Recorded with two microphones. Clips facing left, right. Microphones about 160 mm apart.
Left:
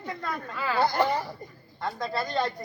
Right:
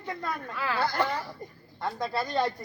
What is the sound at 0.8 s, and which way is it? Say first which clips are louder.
Speech: left 4 dB; 15° left (ahead or behind).